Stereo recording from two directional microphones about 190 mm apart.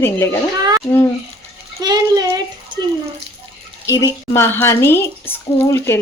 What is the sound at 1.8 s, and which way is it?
Speech, 20° right (ahead or behind).